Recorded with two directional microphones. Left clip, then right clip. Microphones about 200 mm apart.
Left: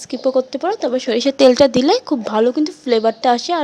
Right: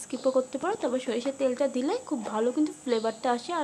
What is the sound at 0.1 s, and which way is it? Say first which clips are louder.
A woman's voice: left 9 dB; 25° left (ahead or behind).